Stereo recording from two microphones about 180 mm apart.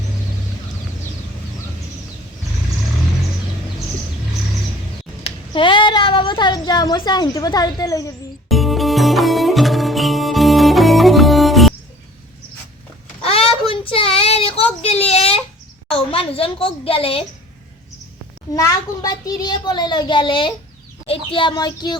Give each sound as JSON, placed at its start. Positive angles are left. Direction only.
{"t": 5.2, "sound": "speech", "side_deg": 25}
{"t": 8.4, "sound": "music", "side_deg": 0}
{"t": 13.2, "sound": "child singing", "side_deg": 30}
{"t": 14.8, "sound": "a sound", "side_deg": 35}
{"t": 15.9, "sound": "a child's voice", "side_deg": 30}
{"t": 18.5, "sound": "a child's voice", "side_deg": 20}